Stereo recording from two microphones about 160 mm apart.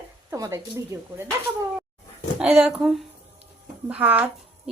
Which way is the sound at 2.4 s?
5° right (ahead or behind).